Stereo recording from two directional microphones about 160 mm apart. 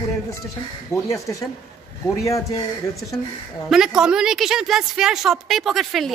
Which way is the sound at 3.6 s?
5° right (ahead or behind).